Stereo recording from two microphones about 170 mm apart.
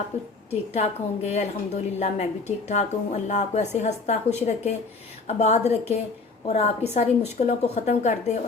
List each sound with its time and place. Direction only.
0.7 s a woman's voice: 40° left (ahead or behind)